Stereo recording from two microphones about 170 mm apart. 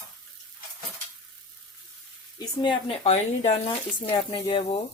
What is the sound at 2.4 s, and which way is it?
A woman's voice, 25° left (ahead or behind).